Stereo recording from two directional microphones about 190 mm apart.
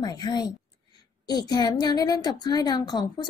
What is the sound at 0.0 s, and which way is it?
A woman's voice, 20° left (ahead or behind).